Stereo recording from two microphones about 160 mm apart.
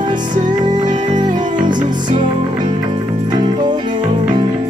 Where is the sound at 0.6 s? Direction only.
30° right (ahead or behind).